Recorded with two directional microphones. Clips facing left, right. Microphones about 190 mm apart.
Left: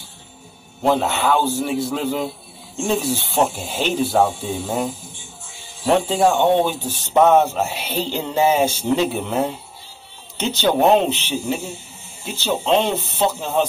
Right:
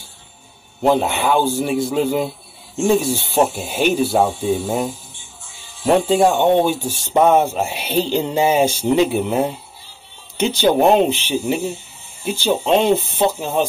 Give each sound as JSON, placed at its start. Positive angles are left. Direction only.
{"t": 0.8, "sound": "speech", "side_deg": -15}
{"t": 5.9, "sound": "speech", "side_deg": -15}